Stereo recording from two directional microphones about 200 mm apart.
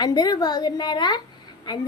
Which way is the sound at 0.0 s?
20° left (ahead or behind).